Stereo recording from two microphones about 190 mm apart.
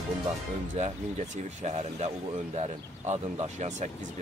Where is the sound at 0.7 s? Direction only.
35° right (ahead or behind).